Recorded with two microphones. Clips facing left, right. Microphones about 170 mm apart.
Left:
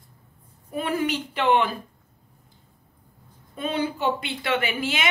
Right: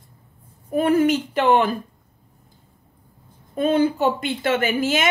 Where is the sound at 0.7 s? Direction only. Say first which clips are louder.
Right 8 dB; 45° right (ahead or behind).